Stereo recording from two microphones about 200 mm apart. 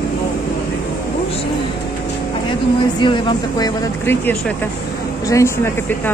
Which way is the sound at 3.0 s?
25° left (ahead or behind).